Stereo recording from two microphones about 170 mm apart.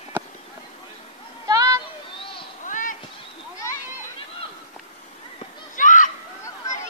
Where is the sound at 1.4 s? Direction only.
20° right (ahead or behind).